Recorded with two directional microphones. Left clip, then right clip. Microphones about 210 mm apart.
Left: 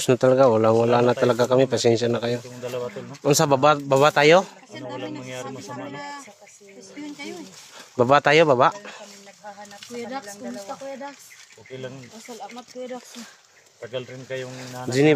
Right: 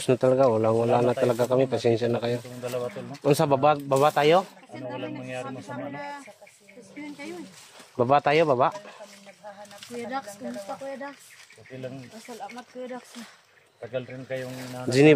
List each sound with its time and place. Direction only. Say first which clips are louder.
0.0 s speech: left 4 dB; 15° left (ahead or behind)
4.7 s speech: left 2 dB; 55° left (ahead or behind)
8.0 s speech: left 4 dB; 25° left (ahead or behind)
12.3 s speech: left 2 dB; 10° left (ahead or behind)
13.9 s speech: left 1 dB; 55° left (ahead or behind)
14.9 s speech: right 1 dB; 5° right (ahead or behind)